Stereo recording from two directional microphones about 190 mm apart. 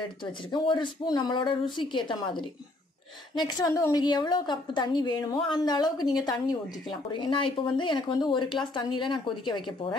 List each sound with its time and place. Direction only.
0.0 s speech: 25° left (ahead or behind)